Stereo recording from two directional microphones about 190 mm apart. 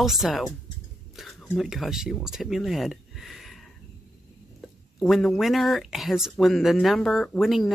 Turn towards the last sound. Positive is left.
turn(degrees=0)  # may be behind; listen again after turning